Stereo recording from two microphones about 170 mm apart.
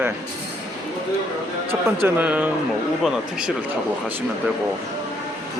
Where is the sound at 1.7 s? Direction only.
15° right (ahead or behind).